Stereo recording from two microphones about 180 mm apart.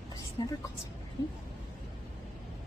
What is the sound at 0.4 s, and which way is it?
Speech, 20° left (ahead or behind).